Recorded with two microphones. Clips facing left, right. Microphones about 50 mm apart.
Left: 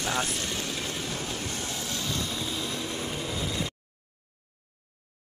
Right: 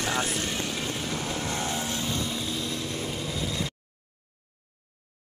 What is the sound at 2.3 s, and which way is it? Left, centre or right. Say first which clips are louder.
Vehicle: right 1 dB; centre.